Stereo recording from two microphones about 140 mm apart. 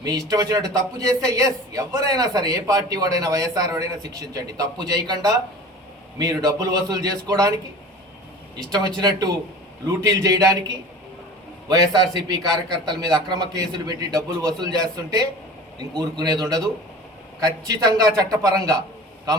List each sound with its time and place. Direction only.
0.0 s a man's voice: 25° right (ahead or behind)
8.5 s a man's voice: 30° right (ahead or behind)
11.9 s a man's voice: 30° right (ahead or behind)